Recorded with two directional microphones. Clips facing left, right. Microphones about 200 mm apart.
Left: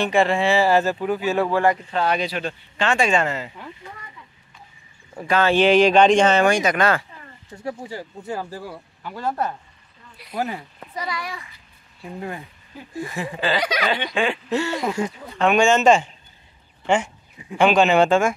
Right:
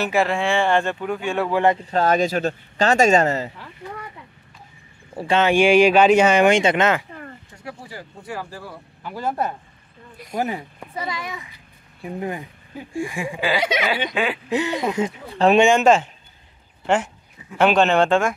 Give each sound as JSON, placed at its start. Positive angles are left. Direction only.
{"t": 0.0, "sound": "speech", "side_deg": -5}
{"t": 1.5, "sound": "speech", "side_deg": -20}
{"t": 1.9, "sound": "speech", "side_deg": -40}
{"t": 5.1, "sound": "speech", "side_deg": -30}
{"t": 5.4, "sound": "speech", "side_deg": -10}
{"t": 6.5, "sound": "speech", "side_deg": -25}
{"t": 7.5, "sound": "speech", "side_deg": 25}
{"t": 9.0, "sound": "speech", "side_deg": -5}
{"t": 9.3, "sound": "speech", "side_deg": -15}
{"t": 14.5, "sound": "speech", "side_deg": -15}
{"t": 15.3, "sound": "speech", "side_deg": -35}
{"t": 15.6, "sound": "speech", "side_deg": -10}